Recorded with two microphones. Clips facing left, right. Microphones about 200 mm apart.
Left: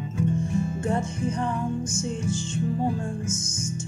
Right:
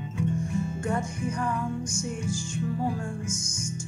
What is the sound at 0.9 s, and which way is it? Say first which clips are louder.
Music: left 3 dB; 25° left (ahead or behind).